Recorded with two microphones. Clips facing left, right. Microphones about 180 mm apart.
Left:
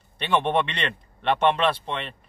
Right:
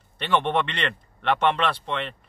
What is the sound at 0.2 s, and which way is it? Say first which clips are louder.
A man's voice: left 1 dB; 15° left (ahead or behind).